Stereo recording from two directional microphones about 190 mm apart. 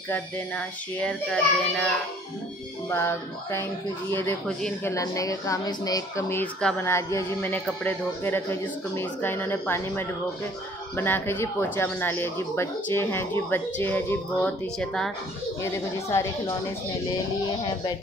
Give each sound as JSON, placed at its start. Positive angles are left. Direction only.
{"t": 0.1, "sound": "speech", "side_deg": 5}
{"t": 4.9, "sound": "speech", "side_deg": 15}
{"t": 15.6, "sound": "speech", "side_deg": 15}